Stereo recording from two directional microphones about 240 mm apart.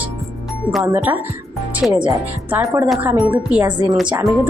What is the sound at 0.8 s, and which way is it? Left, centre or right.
A woman's voice, centre.